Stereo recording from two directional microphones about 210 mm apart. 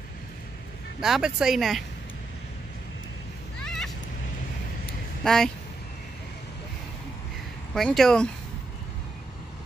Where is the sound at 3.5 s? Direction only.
5° left (ahead or behind).